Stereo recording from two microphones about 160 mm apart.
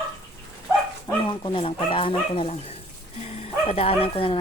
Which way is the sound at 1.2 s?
30° left (ahead or behind).